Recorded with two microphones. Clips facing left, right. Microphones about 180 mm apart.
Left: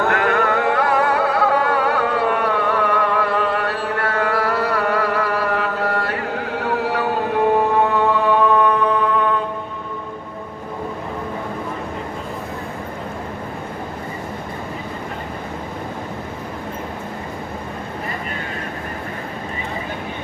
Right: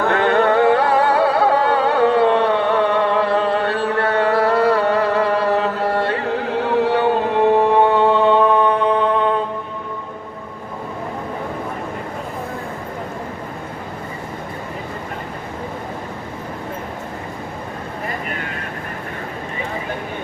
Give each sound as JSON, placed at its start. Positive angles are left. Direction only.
{"t": 0.1, "sound": "music", "side_deg": -30}